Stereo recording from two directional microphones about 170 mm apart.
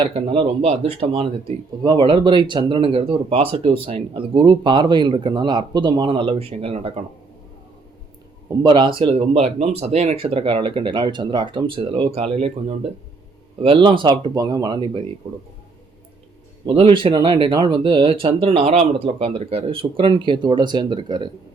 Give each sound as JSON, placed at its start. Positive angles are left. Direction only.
{"t": 0.0, "sound": "speech", "side_deg": -30}
{"t": 8.4, "sound": "speech", "side_deg": -25}
{"t": 16.6, "sound": "speech", "side_deg": -35}